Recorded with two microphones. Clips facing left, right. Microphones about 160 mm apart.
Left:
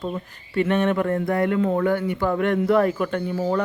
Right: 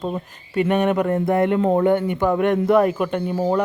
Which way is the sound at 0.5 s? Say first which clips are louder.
Right 2 dB; 15° right (ahead or behind).